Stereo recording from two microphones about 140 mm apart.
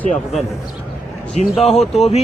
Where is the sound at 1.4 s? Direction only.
55° left (ahead or behind).